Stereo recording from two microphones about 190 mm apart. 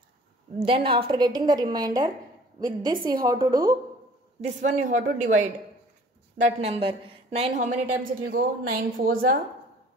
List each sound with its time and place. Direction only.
0.6 s a woman's voice: 30° right (ahead or behind)
4.4 s a woman's voice: 40° right (ahead or behind)